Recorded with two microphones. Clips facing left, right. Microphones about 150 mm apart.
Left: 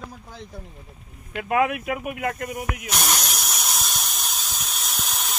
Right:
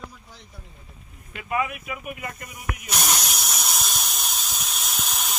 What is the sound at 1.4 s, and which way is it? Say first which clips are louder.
Speech: left 5 dB; 85° left.